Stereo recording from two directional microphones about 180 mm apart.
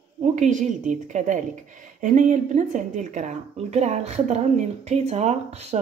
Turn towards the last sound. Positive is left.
turn(degrees=-35)  # may be behind; listen again after turning